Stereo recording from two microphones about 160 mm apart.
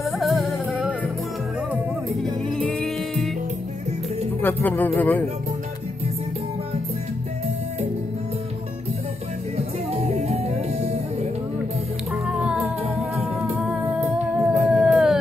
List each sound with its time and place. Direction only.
0.0 s music: centre (ahead or behind)
2.6 s music: 5° left (ahead or behind)
4.4 s speech: 10° left (ahead or behind)
9.6 s music: 40° right (ahead or behind)
12.3 s music: 5° right (ahead or behind)
14.0 s humming: 10° right (ahead or behind)
14.7 s howl: 5° right (ahead or behind)